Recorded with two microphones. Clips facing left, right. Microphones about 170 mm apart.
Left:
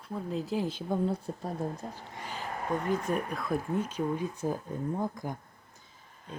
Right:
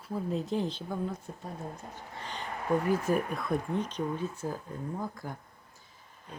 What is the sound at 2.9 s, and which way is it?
Speech, 5° right (ahead or behind).